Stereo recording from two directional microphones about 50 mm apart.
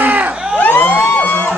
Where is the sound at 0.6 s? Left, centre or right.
Left.